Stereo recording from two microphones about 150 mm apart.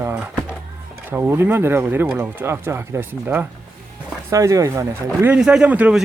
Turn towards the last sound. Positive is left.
turn(degrees=-5)  # may be behind; listen again after turning